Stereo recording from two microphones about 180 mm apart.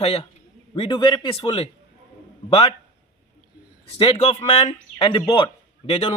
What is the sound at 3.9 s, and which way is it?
Speech, 35° left (ahead or behind).